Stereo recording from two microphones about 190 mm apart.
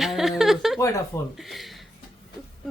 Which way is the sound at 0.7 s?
15° left (ahead or behind).